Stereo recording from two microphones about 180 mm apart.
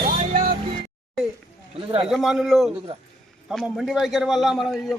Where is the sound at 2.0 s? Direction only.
Centre (ahead or behind).